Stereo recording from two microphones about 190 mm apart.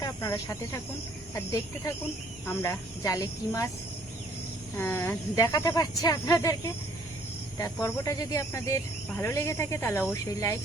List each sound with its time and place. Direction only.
0.0 s speech: 15° left (ahead or behind)
4.8 s speech: 10° left (ahead or behind)
7.6 s speech: 15° left (ahead or behind)